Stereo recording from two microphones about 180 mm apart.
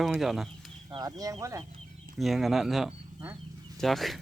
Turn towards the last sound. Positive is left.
turn(degrees=0)  # may be behind; listen again after turning